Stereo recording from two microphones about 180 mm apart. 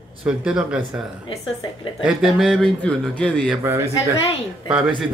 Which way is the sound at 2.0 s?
5° right (ahead or behind).